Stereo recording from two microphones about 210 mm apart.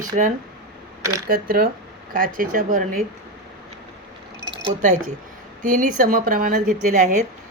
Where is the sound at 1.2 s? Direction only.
45° right (ahead or behind).